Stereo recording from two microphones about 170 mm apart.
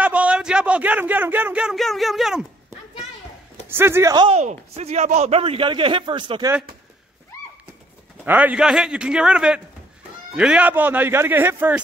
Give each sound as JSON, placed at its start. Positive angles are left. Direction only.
{"t": 0.0, "sound": "speech", "side_deg": -10}
{"t": 3.6, "sound": "speech", "side_deg": -15}
{"t": 4.4, "sound": "a man's voice", "side_deg": -40}
{"t": 8.3, "sound": "a man's voice", "side_deg": -10}